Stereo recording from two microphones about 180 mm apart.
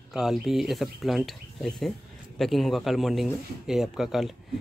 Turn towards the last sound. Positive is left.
turn(degrees=0)  # may be behind; listen again after turning